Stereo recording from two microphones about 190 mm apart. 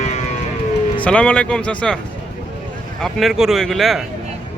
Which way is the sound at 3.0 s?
Centre (ahead or behind).